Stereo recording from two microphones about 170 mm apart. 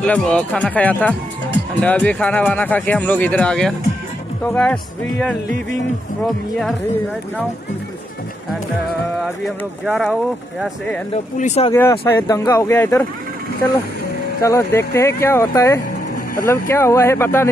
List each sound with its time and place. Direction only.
0.0 s speech: 5° left (ahead or behind)
9.8 s speech: centre (ahead or behind)
11.3 s speech: 40° left (ahead or behind)
12.1 s speech: 15° left (ahead or behind)
14.4 s speech: 15° left (ahead or behind)